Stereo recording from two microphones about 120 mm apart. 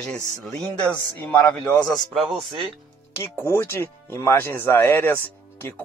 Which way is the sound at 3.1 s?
20° left (ahead or behind).